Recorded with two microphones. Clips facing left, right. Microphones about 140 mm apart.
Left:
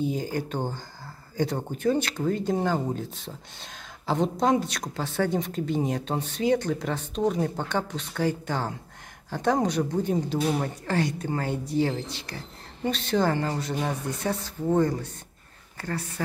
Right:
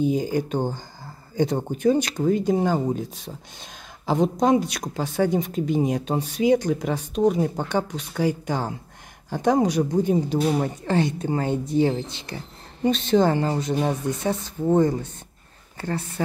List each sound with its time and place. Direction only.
0.0 s a woman's voice: 15° right (ahead or behind)